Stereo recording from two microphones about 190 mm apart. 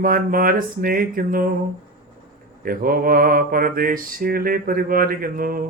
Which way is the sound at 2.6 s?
50° right (ahead or behind).